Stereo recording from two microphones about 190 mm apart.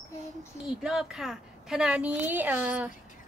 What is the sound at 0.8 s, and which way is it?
A woman's voice, 5° right (ahead or behind).